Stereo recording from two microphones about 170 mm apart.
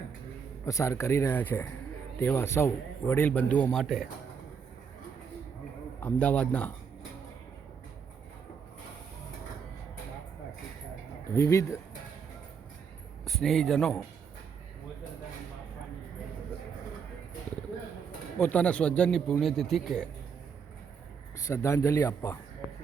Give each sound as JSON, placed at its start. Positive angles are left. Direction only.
{"t": 0.6, "sound": "a man's voice", "side_deg": 15}
{"t": 6.0, "sound": "a man's voice", "side_deg": 10}
{"t": 11.3, "sound": "a man's voice", "side_deg": 15}
{"t": 13.2, "sound": "speech", "side_deg": 0}
{"t": 18.3, "sound": "speech", "side_deg": 5}
{"t": 21.4, "sound": "a man's voice", "side_deg": 15}